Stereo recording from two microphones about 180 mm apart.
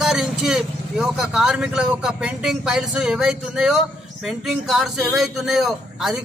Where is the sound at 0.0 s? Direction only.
Centre (ahead or behind).